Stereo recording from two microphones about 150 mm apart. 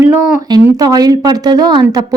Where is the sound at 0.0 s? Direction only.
15° right (ahead or behind).